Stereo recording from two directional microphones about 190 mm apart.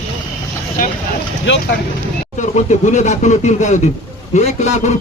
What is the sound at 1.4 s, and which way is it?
Speech, 70° left (ahead or behind).